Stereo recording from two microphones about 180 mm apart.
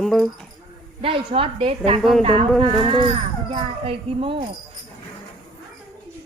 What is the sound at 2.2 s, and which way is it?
Speech, 30° right (ahead or behind).